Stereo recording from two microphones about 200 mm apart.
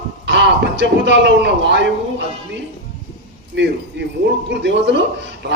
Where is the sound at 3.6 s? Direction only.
60° right (ahead or behind).